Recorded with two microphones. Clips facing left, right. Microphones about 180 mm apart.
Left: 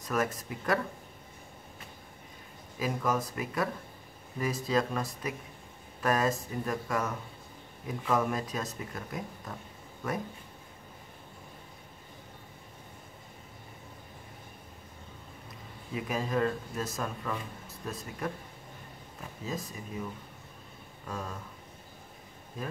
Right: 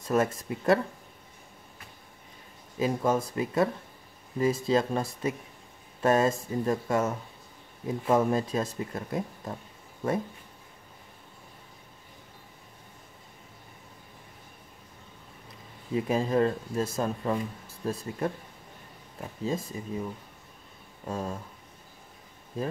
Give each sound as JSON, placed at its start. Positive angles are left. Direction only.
{"t": 0.0, "sound": "speech", "side_deg": -25}
{"t": 2.8, "sound": "speech", "side_deg": -25}
{"t": 15.9, "sound": "speech", "side_deg": -30}
{"t": 19.4, "sound": "speech", "side_deg": -25}
{"t": 21.1, "sound": "speech", "side_deg": -30}